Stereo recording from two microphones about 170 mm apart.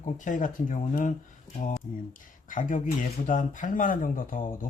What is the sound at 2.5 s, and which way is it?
Speech, 50° left (ahead or behind).